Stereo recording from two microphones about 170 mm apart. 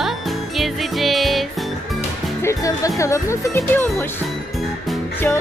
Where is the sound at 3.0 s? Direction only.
15° left (ahead or behind).